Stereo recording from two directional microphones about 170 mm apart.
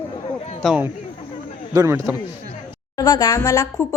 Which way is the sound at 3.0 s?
25° left (ahead or behind).